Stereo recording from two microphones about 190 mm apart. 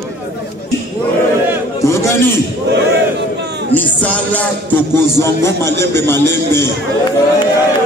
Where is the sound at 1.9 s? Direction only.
15° left (ahead or behind).